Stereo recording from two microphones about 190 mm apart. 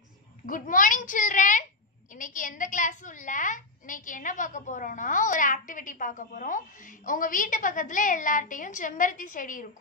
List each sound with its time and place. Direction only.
0.5 s a woman's voice: 45° left (ahead or behind)